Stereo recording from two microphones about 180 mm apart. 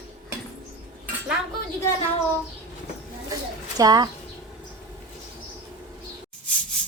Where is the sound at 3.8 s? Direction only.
20° right (ahead or behind).